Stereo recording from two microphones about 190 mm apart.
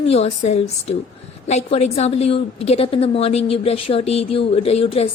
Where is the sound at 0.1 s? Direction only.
35° left (ahead or behind).